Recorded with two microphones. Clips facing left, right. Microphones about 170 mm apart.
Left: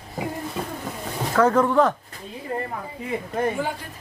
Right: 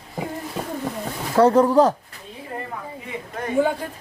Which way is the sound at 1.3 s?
35° right (ahead or behind).